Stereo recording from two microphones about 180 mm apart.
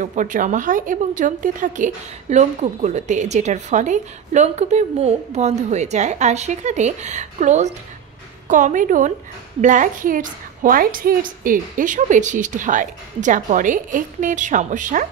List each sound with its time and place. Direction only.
0.0 s a woman's voice: 45° right (ahead or behind)